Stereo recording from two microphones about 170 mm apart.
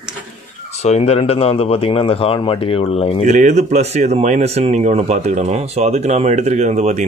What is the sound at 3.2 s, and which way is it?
Speech, 45° right (ahead or behind).